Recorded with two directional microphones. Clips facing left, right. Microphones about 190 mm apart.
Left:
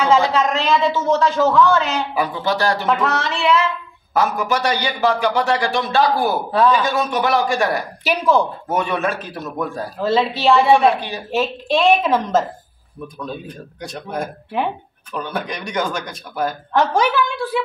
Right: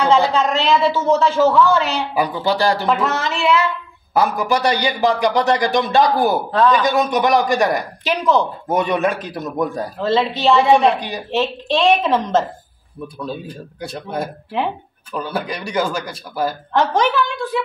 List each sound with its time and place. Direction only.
0.2 s a woman's voice: centre (ahead or behind); by 6.4 s 15° right (ahead or behind)
6.5 s speech: 15° left (ahead or behind)
6.8 s speech: 15° right (ahead or behind)
8.0 s speech: 10° left (ahead or behind)
8.6 s speech: 15° right (ahead or behind)
9.9 s a woman's voice: 5° left (ahead or behind)
11.0 s speech: 15° right (ahead or behind)
11.3 s a woman's voice: 5° left (ahead or behind)